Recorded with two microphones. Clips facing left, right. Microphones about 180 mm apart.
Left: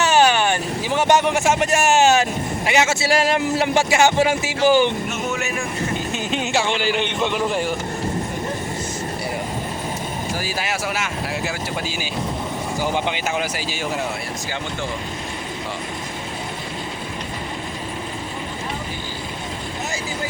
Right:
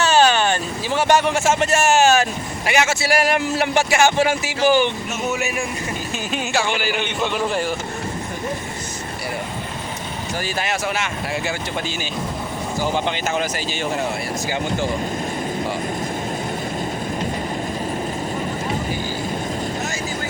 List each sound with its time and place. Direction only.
0.0 s vehicle: 15° left (ahead or behind)
0.9 s speech: 20° left (ahead or behind)
6.3 s speech: 25° left (ahead or behind)
10.4 s speech: 5° left (ahead or behind)